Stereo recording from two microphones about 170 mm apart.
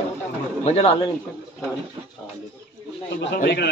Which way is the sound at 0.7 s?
35° left (ahead or behind).